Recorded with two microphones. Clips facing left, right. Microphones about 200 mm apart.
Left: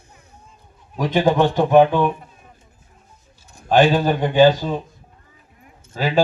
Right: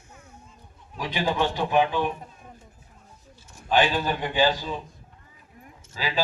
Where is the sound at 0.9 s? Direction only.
50° left (ahead or behind).